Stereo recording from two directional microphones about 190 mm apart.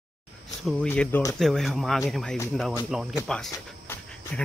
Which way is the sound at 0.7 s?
5° left (ahead or behind).